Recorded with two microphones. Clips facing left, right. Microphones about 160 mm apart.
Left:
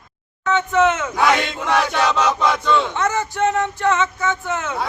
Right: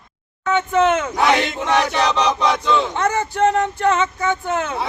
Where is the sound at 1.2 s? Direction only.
20° right (ahead or behind).